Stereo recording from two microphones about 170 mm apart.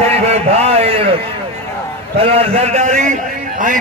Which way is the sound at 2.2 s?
35° right (ahead or behind).